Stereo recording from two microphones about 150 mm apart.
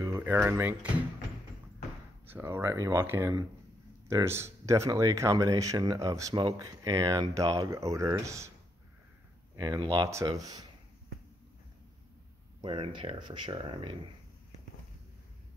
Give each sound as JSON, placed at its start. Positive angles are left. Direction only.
{"t": 0.0, "sound": "speech", "side_deg": -15}
{"t": 2.2, "sound": "speech", "side_deg": -15}
{"t": 9.6, "sound": "speech", "side_deg": -25}
{"t": 12.6, "sound": "speech", "side_deg": -35}